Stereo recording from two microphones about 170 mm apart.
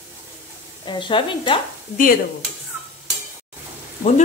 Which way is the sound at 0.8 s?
30° left (ahead or behind).